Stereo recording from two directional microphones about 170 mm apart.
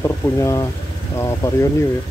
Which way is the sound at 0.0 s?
15° left (ahead or behind).